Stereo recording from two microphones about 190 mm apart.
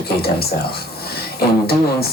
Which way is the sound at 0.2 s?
55° left (ahead or behind).